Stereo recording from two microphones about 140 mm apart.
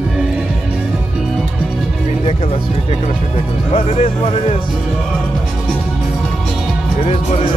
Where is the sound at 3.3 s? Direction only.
50° left (ahead or behind).